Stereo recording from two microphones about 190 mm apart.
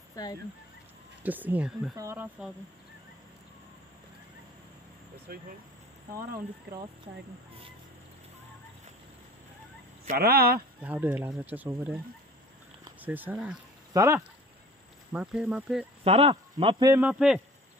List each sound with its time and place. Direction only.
0.1 s speech: 20° left (ahead or behind)
1.2 s speech: 10° right (ahead or behind)
5.3 s speech: 50° right (ahead or behind)
10.1 s speech: 55° right (ahead or behind)
10.8 s speech: 10° right (ahead or behind)
13.0 s speech: 10° right (ahead or behind)
16.0 s a man's voice: 30° right (ahead or behind)
16.9 s speech: 5° right (ahead or behind)